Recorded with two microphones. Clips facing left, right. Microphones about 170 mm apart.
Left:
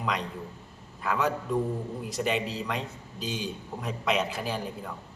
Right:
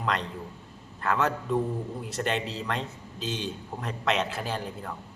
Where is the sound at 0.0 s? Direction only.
10° left (ahead or behind).